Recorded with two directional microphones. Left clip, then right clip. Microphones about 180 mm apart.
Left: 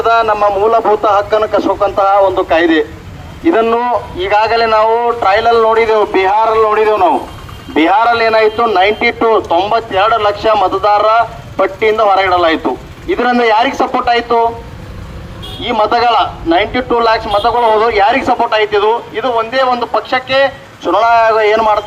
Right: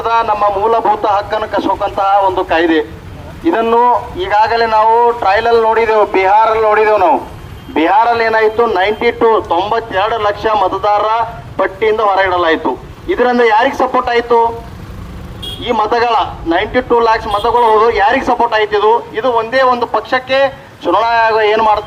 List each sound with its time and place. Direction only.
0.0 s a man's voice: 35° left (ahead or behind); by 7.2 s 15° left (ahead or behind)
7.7 s a man's voice: 30° left (ahead or behind)
15.6 s a man's voice: 35° left (ahead or behind)